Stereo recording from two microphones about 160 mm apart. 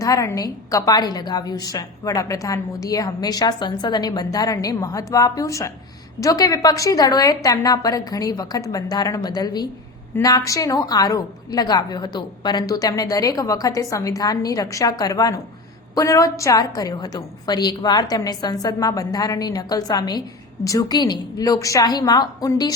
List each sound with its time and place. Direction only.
0.0 s a woman's voice: 20° left (ahead or behind)